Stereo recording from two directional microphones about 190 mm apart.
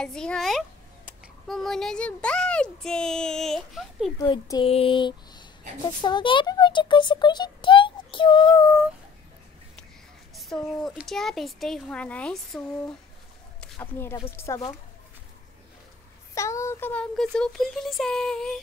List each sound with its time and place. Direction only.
0.0 s speech: 5° left (ahead or behind)
4.2 s a child's voice: 20° left (ahead or behind)
10.3 s speech: centre (ahead or behind)
16.3 s speech: 15° left (ahead or behind)